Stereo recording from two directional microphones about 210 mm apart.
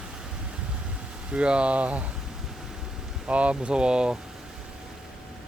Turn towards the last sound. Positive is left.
turn(degrees=-5)  # may be behind; listen again after turning